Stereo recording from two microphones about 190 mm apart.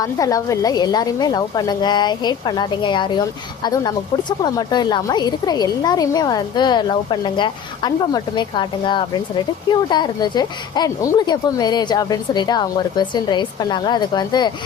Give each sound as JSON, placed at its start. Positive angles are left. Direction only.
{"t": 0.0, "sound": "a woman's voice", "side_deg": 20}